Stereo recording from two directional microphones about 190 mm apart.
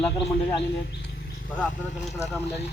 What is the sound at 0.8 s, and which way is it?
Wild animals, 55° left (ahead or behind).